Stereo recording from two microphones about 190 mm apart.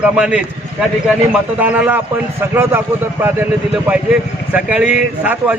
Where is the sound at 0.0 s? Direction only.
5° right (ahead or behind).